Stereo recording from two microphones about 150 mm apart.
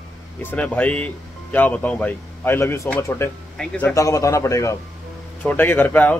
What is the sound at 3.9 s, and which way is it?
A man's voice, 20° left (ahead or behind).